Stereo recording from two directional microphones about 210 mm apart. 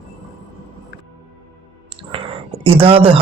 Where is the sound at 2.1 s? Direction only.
25° right (ahead or behind).